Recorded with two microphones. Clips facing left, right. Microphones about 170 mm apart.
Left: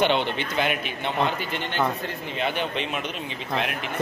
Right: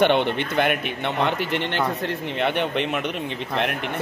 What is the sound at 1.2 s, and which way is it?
Speech, 70° right (ahead or behind).